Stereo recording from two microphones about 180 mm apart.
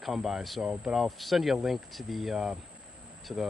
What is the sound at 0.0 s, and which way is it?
Speech, centre (ahead or behind).